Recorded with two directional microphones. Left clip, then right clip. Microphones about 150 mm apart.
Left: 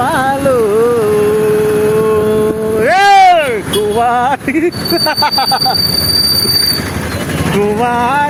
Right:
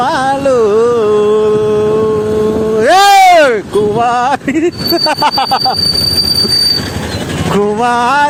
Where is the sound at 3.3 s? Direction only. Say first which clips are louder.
Right 3 dB; 50° right (ahead or behind).